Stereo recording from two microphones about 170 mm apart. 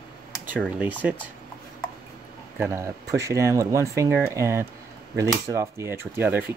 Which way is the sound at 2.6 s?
15° right (ahead or behind).